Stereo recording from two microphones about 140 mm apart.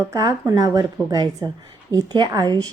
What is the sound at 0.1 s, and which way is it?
A woman's voice, 25° right (ahead or behind).